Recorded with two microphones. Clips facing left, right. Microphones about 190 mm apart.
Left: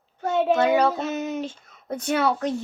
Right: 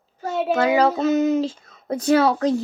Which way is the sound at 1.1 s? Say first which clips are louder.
Right 10 dB; 35° right (ahead or behind).